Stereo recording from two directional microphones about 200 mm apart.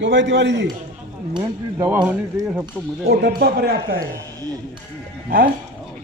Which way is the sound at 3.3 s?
50° right (ahead or behind).